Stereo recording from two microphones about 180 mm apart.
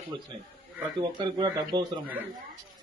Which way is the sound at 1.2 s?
25° right (ahead or behind).